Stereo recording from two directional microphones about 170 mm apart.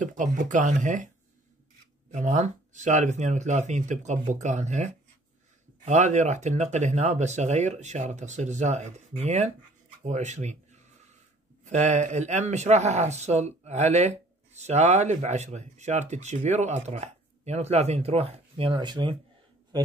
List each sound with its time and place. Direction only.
0.0 s a man's voice: 50° right (ahead or behind); by 19.9 s 25° right (ahead or behind)